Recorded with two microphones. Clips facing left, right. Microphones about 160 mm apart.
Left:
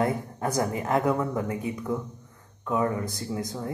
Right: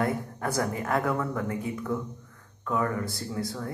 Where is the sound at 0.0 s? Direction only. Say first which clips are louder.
Left 2 dB; 20° left (ahead or behind).